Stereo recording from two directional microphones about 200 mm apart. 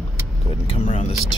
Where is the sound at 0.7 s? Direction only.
35° left (ahead or behind).